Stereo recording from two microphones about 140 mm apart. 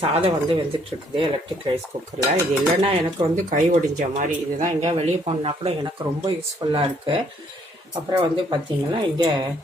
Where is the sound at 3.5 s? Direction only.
65° right (ahead or behind).